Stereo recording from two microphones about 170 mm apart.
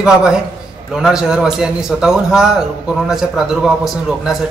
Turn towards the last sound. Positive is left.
turn(degrees=0)  # may be behind; listen again after turning